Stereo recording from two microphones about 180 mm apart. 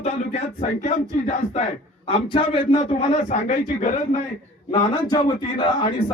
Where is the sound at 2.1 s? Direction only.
25° left (ahead or behind).